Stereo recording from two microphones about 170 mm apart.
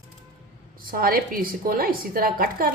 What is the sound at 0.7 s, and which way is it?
A woman's voice, 55° right (ahead or behind).